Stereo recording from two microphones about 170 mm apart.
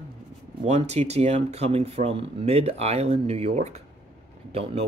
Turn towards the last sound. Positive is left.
turn(degrees=-35)  # may be behind; listen again after turning